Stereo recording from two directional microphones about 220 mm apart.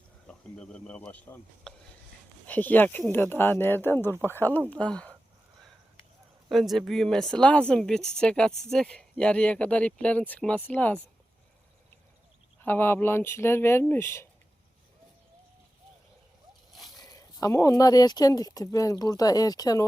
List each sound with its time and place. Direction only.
0.5 s speech: 5° left (ahead or behind)
6.5 s speech: centre (ahead or behind)
12.5 s speech: 10° left (ahead or behind)
17.0 s speech: 15° left (ahead or behind)